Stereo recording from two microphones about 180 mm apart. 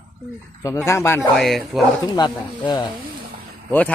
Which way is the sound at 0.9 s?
15° left (ahead or behind).